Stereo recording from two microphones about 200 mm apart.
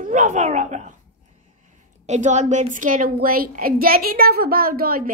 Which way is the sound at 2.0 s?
35° right (ahead or behind).